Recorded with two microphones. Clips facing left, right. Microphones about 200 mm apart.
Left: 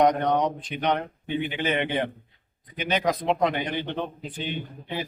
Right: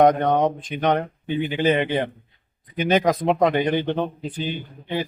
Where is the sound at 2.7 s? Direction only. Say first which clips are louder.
Right 6 dB; 45° right (ahead or behind).